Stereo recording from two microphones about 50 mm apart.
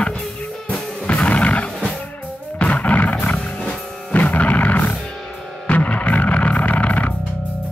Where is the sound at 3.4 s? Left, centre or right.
Centre.